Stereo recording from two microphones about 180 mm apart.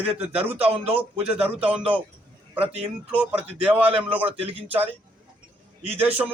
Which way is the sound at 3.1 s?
5° right (ahead or behind).